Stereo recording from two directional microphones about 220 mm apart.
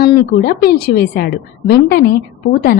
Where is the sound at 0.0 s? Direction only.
45° left (ahead or behind).